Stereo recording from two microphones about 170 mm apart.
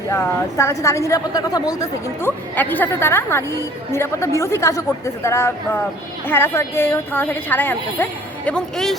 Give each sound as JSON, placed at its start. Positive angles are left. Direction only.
{"t": 0.1, "sound": "a woman's voice", "side_deg": 15}